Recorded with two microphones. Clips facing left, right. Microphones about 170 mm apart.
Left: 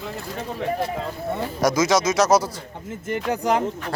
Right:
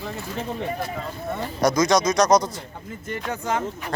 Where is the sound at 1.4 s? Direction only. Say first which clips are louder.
Even; 5° left (ahead or behind).